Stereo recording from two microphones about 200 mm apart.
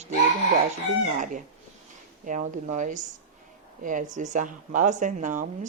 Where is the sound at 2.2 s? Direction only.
40° right (ahead or behind).